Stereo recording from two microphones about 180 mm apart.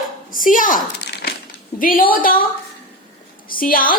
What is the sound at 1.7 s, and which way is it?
Speech, 50° left (ahead or behind).